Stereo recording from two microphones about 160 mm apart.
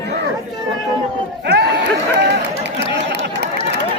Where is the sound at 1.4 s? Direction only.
90° right.